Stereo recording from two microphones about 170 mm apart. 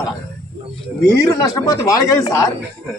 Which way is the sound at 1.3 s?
20° left (ahead or behind).